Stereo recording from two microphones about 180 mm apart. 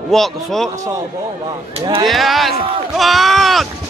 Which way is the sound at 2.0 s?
Centre (ahead or behind).